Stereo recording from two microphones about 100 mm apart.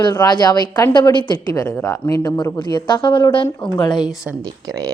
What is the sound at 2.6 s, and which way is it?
Speech, 50° left (ahead or behind).